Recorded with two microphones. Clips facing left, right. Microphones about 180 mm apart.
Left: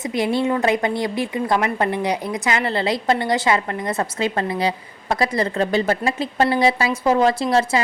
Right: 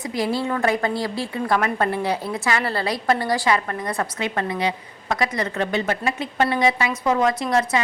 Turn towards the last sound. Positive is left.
turn(degrees=30)  # may be behind; listen again after turning